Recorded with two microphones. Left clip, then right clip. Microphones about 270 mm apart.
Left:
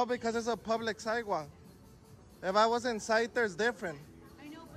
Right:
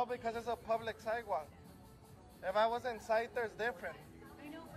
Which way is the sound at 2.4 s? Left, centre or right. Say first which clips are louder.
Left 6 dB; left.